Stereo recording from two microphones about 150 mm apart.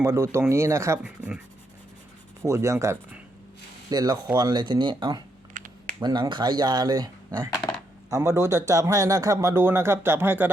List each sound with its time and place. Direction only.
0.0 s speech: 20° right (ahead or behind)
1.0 s speech: 5° right (ahead or behind)
2.4 s speech: 20° right (ahead or behind)
5.5 s typing: 60° right (ahead or behind)
6.0 s speech: 30° right (ahead or behind); by 10.5 s 15° right (ahead or behind)